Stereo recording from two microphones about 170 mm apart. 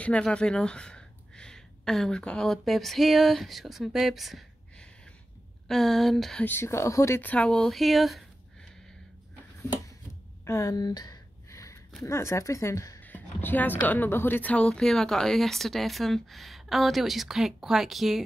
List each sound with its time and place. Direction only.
0.0 s a woman's voice: 5° left (ahead or behind)
10.4 s a sound: 15° left (ahead or behind)
12.0 s a woman's voice: 15° left (ahead or behind); by 18.2 s centre (ahead or behind)